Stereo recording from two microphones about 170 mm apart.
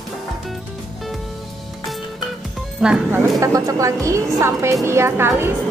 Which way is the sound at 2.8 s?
10° right (ahead or behind).